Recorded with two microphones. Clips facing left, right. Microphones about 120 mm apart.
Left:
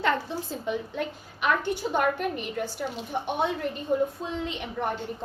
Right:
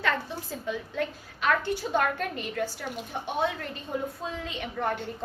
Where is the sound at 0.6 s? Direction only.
20° left (ahead or behind).